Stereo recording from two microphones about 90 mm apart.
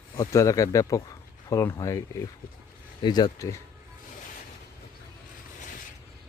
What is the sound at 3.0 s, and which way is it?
Speech, 50° left (ahead or behind).